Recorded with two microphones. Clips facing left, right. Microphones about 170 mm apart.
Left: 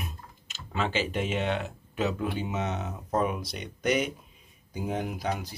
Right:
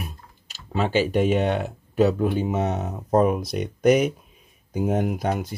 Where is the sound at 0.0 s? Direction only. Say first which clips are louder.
Right 3 dB; 40° right (ahead or behind).